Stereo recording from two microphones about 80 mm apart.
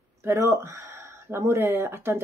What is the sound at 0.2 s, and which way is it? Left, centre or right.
A man's voice, right.